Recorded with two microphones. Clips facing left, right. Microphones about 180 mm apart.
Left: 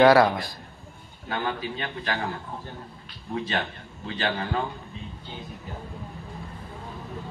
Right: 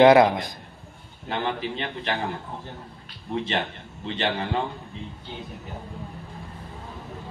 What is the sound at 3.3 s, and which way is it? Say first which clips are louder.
A man's voice: right 2 dB; 25° right (ahead or behind).